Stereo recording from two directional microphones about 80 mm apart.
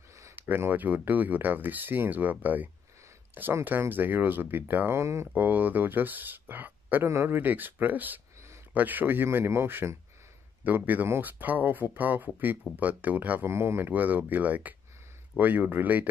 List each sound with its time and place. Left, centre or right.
0.4 s speech: right
5.3 s speech: right
13.5 s speech: right